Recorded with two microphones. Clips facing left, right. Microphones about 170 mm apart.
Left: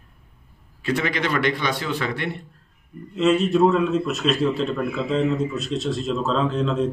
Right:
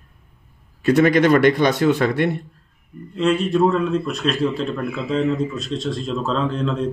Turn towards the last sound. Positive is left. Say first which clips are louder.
# even
turn(degrees=0)  # may be behind; listen again after turning